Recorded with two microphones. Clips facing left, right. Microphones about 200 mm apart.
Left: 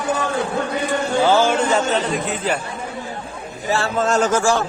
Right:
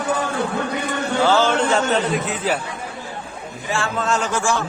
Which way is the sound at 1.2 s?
15° left (ahead or behind).